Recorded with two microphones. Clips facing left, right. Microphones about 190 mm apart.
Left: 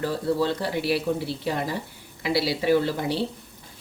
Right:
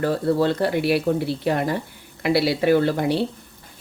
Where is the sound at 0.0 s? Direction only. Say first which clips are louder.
Right 4 dB; 55° right (ahead or behind).